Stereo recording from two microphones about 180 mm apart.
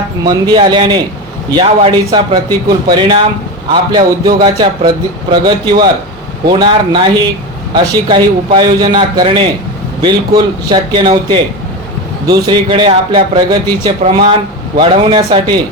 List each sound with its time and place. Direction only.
0.3 s a man's voice: 25° right (ahead or behind)
14.0 s a man's voice: 35° right (ahead or behind)